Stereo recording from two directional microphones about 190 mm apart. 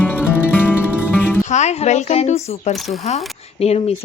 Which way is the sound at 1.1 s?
10° left (ahead or behind).